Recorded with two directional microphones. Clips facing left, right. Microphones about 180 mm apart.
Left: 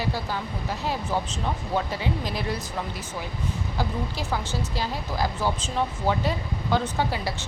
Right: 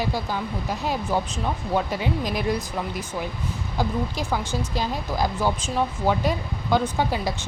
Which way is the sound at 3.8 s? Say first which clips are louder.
Right 5 dB; 15° right (ahead or behind).